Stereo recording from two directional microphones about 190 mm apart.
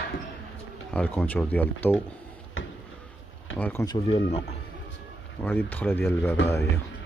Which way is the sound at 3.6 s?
15° left (ahead or behind).